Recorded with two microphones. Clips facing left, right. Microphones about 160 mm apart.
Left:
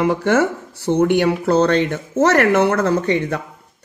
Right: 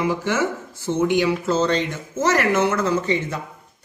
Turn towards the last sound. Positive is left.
turn(degrees=60)  # may be behind; listen again after turning